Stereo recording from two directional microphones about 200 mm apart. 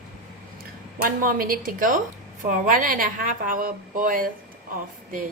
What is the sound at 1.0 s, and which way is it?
A woman's voice, 45° right (ahead or behind).